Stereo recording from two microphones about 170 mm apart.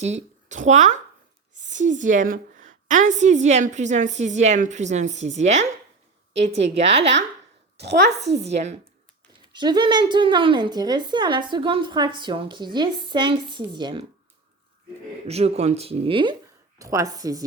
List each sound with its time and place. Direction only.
0.0 s a woman's voice: 45° right (ahead or behind)
9.5 s a woman's voice: 25° right (ahead or behind)
15.3 s speech: 40° right (ahead or behind)
16.7 s a woman's voice: 20° right (ahead or behind)